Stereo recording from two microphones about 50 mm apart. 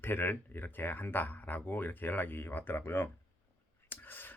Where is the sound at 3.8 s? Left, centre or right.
Left.